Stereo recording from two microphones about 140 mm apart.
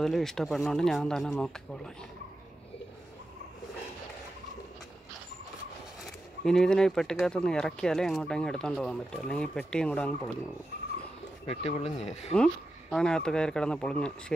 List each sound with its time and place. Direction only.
0.0 s speech: 5° left (ahead or behind)
6.0 s speech: 5° left (ahead or behind)
11.4 s speech: 45° left (ahead or behind)
12.9 s speech: 5° left (ahead or behind)